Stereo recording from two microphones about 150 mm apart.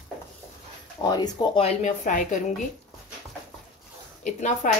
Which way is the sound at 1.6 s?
60° left (ahead or behind).